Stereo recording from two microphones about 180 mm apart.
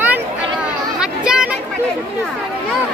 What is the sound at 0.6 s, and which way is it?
Chatter, 5° right (ahead or behind).